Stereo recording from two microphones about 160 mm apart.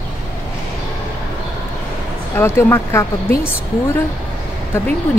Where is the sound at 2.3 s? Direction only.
15° left (ahead or behind).